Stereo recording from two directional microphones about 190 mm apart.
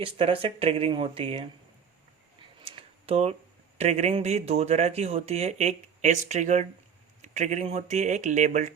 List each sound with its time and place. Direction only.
0.0 s speech: 30° right (ahead or behind)
2.6 s a sound: 30° right (ahead or behind)
3.8 s speech: 35° right (ahead or behind)